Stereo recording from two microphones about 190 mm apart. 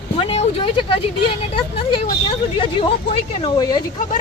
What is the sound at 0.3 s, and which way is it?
Speech, 30° left (ahead or behind).